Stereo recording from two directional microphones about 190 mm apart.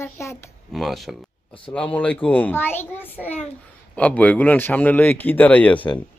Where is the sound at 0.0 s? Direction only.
15° left (ahead or behind).